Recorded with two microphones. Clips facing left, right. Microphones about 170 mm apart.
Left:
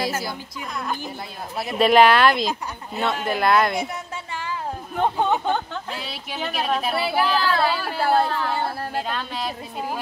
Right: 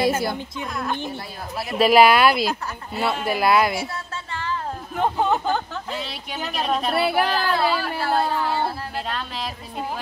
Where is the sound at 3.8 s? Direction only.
15° left (ahead or behind).